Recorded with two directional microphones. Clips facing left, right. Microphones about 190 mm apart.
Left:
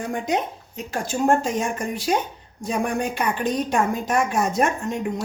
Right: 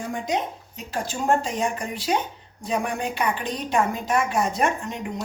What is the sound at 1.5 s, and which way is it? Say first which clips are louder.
A woman's voice: left 2 dB; 45° left (ahead or behind).